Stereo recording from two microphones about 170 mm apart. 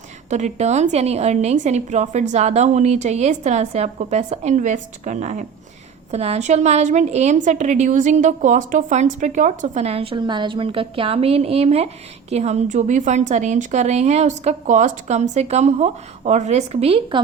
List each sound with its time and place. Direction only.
0.3 s a woman's voice: 40° right (ahead or behind)